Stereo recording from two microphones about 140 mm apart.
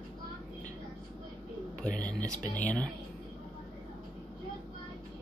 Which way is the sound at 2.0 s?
10° left (ahead or behind).